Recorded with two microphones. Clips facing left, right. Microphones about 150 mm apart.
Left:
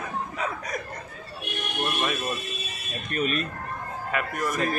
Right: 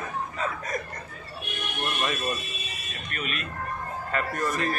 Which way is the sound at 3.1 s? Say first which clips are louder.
Left 8 dB; 40° left (ahead or behind).